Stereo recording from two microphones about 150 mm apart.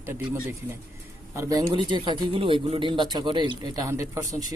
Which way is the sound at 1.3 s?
20° right (ahead or behind).